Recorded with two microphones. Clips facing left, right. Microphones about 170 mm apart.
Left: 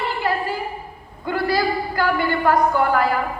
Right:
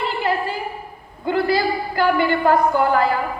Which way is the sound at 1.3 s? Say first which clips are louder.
Right 2 dB; 25° right (ahead or behind).